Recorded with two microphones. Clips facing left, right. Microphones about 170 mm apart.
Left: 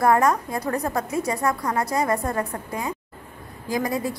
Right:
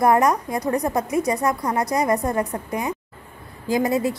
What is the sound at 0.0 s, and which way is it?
A woman's voice, 20° right (ahead or behind).